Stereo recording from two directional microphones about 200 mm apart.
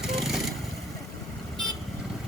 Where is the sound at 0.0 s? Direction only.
Centre (ahead or behind).